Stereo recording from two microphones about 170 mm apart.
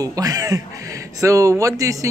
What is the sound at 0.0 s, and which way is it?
Speech, 20° right (ahead or behind).